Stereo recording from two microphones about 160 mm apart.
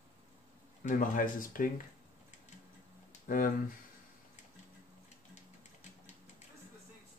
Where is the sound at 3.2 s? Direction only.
60° left (ahead or behind).